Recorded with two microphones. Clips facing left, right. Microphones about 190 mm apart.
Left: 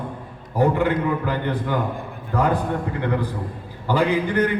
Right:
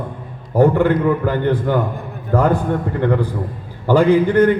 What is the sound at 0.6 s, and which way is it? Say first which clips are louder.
Speech: right 6 dB; 50° right (ahead or behind).